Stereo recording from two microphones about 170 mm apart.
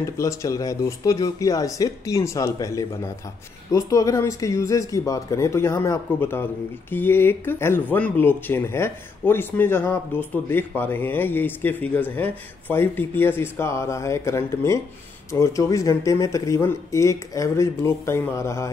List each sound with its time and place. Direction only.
0.0 s speech: 15° left (ahead or behind)